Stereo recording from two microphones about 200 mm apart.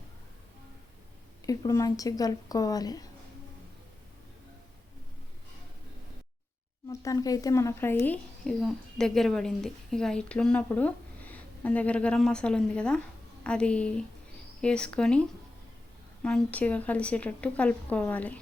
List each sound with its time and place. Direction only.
1.5 s a woman's voice: 15° left (ahead or behind)
7.0 s a woman's voice: 15° left (ahead or behind)